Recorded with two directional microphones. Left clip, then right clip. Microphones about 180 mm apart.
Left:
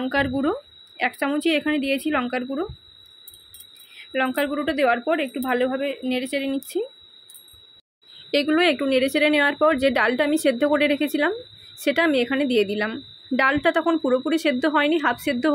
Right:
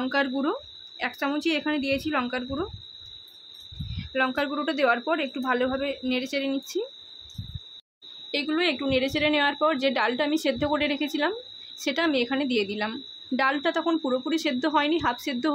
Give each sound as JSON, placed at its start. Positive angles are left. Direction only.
{"t": 0.0, "sound": "a woman's voice", "side_deg": 10}
{"t": 3.9, "sound": "a woman's voice", "side_deg": 10}
{"t": 8.3, "sound": "a woman's voice", "side_deg": 25}